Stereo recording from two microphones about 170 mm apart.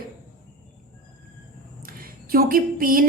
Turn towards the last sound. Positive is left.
turn(degrees=-55)  # may be behind; listen again after turning